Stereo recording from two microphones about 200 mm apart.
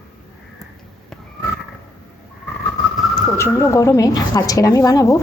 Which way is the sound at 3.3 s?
15° left (ahead or behind).